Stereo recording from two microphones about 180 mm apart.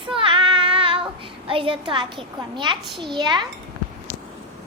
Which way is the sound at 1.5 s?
30° right (ahead or behind).